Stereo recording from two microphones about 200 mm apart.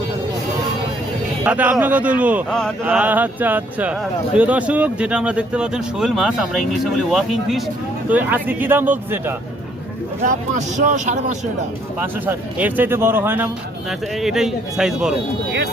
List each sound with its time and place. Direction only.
1.5 s speech: 5° right (ahead or behind)
2.5 s speech: 5° left (ahead or behind)
2.8 s speech: 10° right (ahead or behind)
10.2 s speech: 40° right (ahead or behind)
11.9 s speech: 10° right (ahead or behind)